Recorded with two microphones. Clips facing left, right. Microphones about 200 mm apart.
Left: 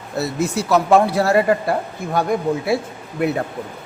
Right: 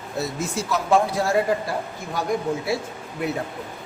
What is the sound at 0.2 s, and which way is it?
Speech, 70° left (ahead or behind).